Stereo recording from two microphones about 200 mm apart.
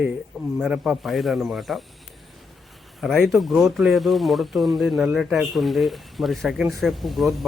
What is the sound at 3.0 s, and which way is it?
Speech, centre (ahead or behind).